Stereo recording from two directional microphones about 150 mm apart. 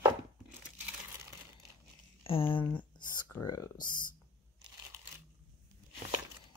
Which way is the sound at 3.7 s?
65° left (ahead or behind).